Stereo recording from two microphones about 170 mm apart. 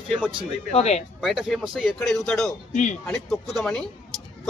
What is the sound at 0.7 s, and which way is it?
Speech, 40° left (ahead or behind).